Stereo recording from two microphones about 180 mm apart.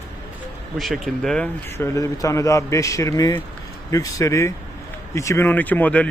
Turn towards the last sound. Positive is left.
turn(degrees=10)  # may be behind; listen again after turning